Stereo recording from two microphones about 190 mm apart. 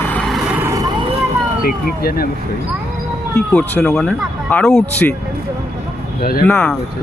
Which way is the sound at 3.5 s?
5° left (ahead or behind).